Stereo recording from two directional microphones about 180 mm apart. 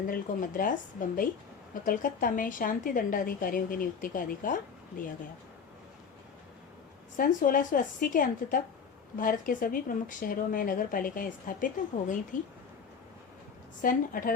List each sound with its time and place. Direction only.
0.1 s speech: 50° left (ahead or behind)
1.8 s speech: 50° left (ahead or behind)
7.2 s speech: 50° left (ahead or behind)
13.8 s speech: 50° left (ahead or behind)